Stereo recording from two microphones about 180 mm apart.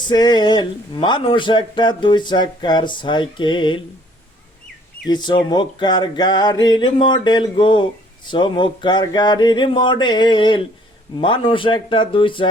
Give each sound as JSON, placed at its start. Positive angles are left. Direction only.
{"t": 0.1, "sound": "speech", "side_deg": 25}
{"t": 5.0, "sound": "speech", "side_deg": 25}